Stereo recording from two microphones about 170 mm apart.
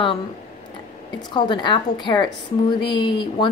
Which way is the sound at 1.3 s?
25° left (ahead or behind).